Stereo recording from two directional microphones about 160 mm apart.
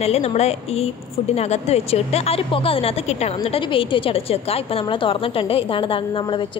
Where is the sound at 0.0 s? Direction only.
40° left (ahead or behind).